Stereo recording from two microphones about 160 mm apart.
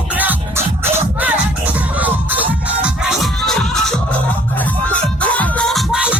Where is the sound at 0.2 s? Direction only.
15° right (ahead or behind).